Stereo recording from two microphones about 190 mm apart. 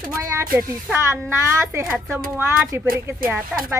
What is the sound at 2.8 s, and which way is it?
Speech, 50° right (ahead or behind).